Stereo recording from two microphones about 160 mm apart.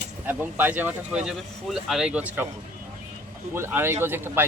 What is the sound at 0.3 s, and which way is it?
A man's voice, 10° right (ahead or behind).